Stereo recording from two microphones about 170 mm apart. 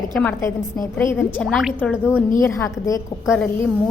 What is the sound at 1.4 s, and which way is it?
Speech, centre (ahead or behind).